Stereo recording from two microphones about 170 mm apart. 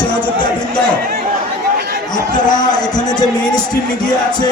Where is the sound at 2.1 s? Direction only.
25° left (ahead or behind).